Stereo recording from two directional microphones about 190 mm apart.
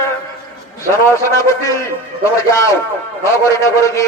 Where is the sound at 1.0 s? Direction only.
15° left (ahead or behind).